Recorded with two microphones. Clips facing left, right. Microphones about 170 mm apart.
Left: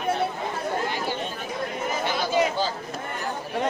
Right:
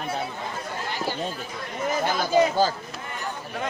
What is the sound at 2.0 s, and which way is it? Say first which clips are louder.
Chatter: right 3 dB; 45° right (ahead or behind).